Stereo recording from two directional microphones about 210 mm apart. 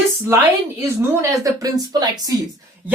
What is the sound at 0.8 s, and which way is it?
Speech, 10° right (ahead or behind).